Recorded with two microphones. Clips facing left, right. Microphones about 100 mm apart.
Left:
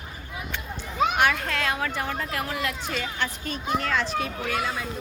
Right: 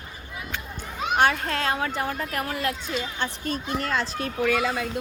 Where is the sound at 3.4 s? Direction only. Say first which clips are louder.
Left 1 dB; 40° right (ahead or behind).